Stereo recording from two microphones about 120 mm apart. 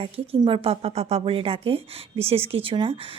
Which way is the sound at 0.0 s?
50° right (ahead or behind).